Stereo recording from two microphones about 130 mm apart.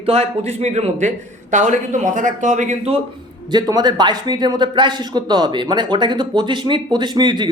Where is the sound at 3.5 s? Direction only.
35° right (ahead or behind).